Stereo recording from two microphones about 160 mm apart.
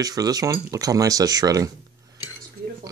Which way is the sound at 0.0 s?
25° right (ahead or behind).